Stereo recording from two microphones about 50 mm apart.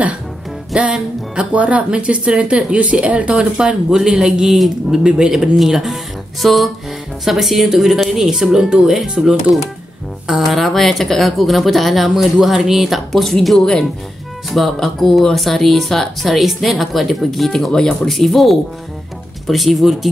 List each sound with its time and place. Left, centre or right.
0.7 s music: centre
1.5 s speech: right
3.3 s speech: centre
5.0 s speech: centre
5.3 s speech: centre